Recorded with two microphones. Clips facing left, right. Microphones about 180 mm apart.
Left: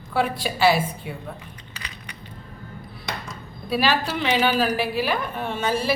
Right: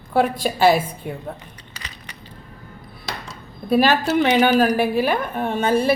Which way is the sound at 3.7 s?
50° right (ahead or behind).